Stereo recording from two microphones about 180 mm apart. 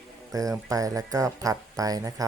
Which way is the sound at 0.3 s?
20° right (ahead or behind).